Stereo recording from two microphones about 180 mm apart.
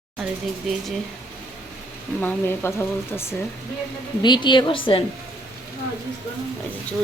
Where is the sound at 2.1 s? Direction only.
10° left (ahead or behind).